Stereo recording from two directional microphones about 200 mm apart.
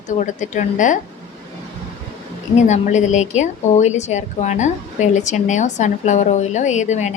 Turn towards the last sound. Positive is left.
turn(degrees=35)  # may be behind; listen again after turning